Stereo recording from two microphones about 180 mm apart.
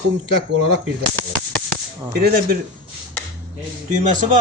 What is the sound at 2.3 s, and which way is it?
Speech, 55° right (ahead or behind).